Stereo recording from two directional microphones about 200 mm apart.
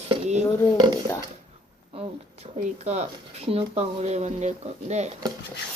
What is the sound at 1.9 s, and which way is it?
Speech, 30° right (ahead or behind).